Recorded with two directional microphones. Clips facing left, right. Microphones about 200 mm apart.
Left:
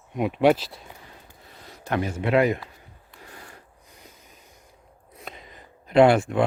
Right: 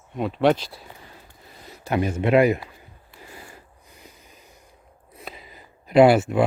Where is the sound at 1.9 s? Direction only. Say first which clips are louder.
Right 3 dB; 20° right (ahead or behind).